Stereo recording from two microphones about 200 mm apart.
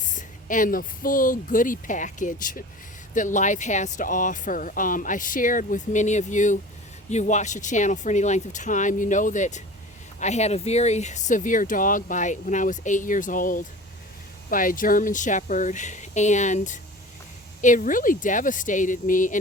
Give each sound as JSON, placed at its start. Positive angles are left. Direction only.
{"t": 0.0, "sound": "speech", "side_deg": 40}